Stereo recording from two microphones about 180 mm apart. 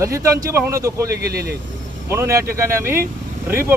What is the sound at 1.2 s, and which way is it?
Speech, 60° right (ahead or behind).